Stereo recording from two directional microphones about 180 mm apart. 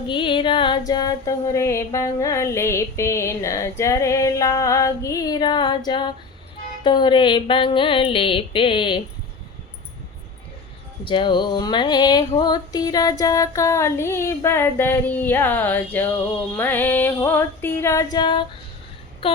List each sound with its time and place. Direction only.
0.1 s female singing: 30° left (ahead or behind)
6.8 s mantra: 25° left (ahead or behind)
11.0 s female singing: 25° left (ahead or behind)
19.2 s a sound: 30° left (ahead or behind)